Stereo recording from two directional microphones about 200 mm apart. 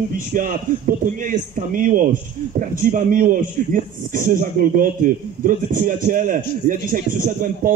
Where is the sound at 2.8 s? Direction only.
40° right (ahead or behind).